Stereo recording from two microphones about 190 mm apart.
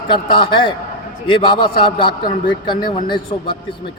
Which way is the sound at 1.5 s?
50° left (ahead or behind).